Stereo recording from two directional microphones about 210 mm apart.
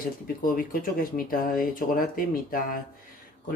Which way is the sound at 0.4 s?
40° left (ahead or behind).